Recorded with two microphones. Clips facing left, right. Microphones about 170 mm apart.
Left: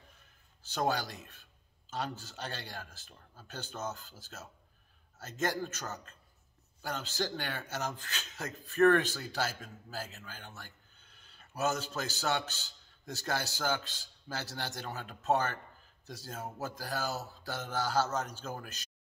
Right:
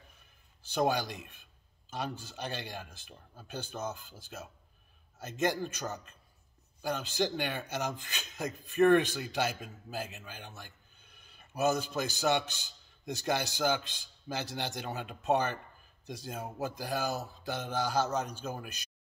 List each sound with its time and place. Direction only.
0.6 s speech: 15° right (ahead or behind)